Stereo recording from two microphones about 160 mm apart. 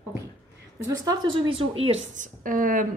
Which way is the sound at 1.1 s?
30° right (ahead or behind).